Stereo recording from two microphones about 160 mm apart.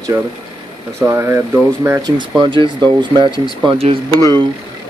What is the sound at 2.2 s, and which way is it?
Speech, 30° right (ahead or behind).